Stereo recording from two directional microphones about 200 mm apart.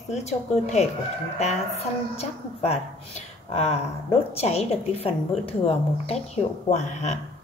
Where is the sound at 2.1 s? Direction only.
30° left (ahead or behind).